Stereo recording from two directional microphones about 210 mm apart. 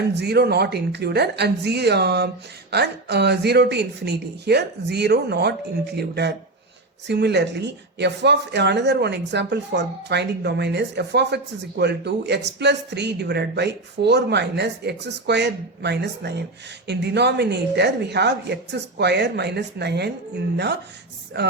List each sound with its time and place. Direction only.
0.1 s speech: 50° right (ahead or behind)